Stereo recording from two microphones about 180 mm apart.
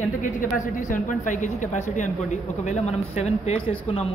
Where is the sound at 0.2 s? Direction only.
45° left (ahead or behind).